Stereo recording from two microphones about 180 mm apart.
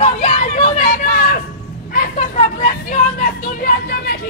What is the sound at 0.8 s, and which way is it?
Speech, 55° left (ahead or behind).